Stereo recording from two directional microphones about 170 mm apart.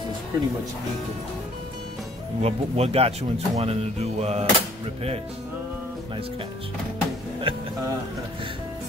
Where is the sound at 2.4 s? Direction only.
35° right (ahead or behind).